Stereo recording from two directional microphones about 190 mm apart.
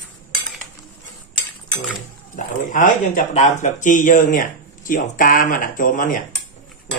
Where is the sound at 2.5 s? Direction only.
45° left (ahead or behind).